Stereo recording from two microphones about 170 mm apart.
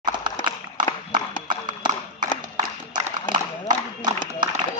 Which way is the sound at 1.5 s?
25° right (ahead or behind).